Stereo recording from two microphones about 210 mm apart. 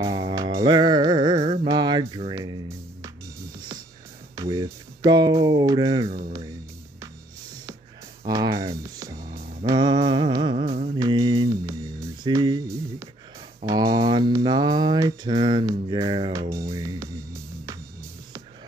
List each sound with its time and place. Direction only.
0.0 s music: 15° right (ahead or behind)
4.4 s speech: 15° right (ahead or behind)
8.3 s music: 15° right (ahead or behind)
13.7 s mantra: 20° right (ahead or behind)